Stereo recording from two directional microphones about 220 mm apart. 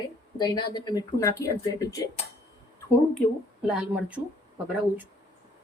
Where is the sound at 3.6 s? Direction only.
5° right (ahead or behind).